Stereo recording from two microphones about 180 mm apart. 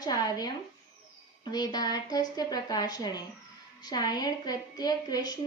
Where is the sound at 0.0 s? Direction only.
20° left (ahead or behind).